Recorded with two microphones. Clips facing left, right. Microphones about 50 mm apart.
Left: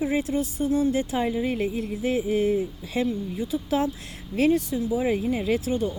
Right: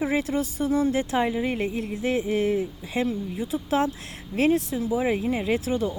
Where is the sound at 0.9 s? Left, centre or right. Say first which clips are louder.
Right 1 dB; right.